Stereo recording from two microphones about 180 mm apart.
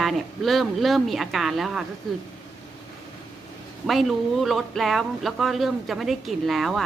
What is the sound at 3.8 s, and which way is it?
Speech, centre (ahead or behind).